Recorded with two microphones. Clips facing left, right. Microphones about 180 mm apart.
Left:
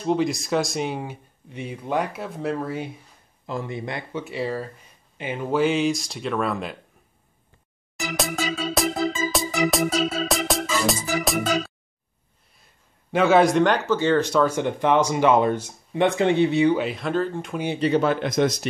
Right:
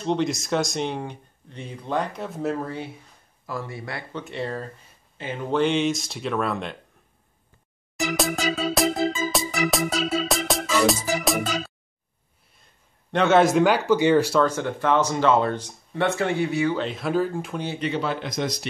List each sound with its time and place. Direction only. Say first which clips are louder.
0.0 s speech: left 2 dB; 5° left (ahead or behind)
3.4 s speech: left 3 dB; 20° left (ahead or behind)
4.1 s speech: left 2 dB; 5° left (ahead or behind)
8.2 s music: even; centre (ahead or behind)
13.1 s speech: left 1 dB; centre (ahead or behind)
13.8 s speech: right 2 dB; 15° right (ahead or behind)
14.4 s speech: left 2 dB; 15° left (ahead or behind)
16.9 s speech: right 1 dB; 5° right (ahead or behind)
17.7 s speech: left 7 dB; 35° left (ahead or behind)
18.0 s speech: left 6 dB; 55° left (ahead or behind)